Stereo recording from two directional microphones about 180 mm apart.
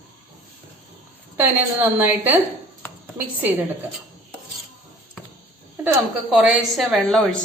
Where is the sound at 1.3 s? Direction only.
10° right (ahead or behind).